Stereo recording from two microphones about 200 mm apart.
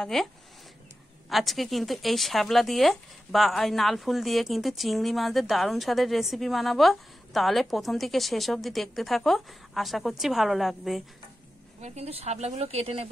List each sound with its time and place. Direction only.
0.0 s a woman's voice: centre (ahead or behind)
1.3 s a woman's voice: centre (ahead or behind)
11.8 s speech: 30° right (ahead or behind)